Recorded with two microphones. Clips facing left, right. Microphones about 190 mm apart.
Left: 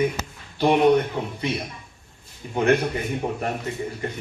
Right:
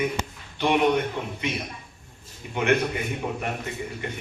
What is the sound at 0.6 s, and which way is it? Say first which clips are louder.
Speech: left 4 dB; 35° left (ahead or behind).